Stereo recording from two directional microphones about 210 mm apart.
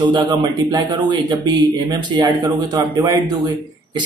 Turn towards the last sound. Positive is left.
turn(degrees=-15)  # may be behind; listen again after turning